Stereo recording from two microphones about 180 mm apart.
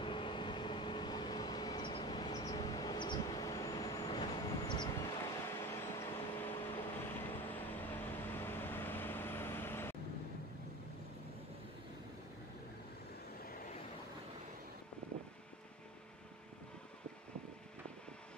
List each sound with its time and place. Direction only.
0.0 s vehicle: 25° left (ahead or behind)